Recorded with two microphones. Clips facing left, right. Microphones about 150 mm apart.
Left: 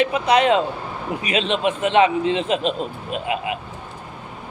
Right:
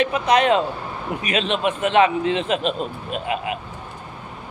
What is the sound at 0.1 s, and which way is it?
Speech, 30° left (ahead or behind).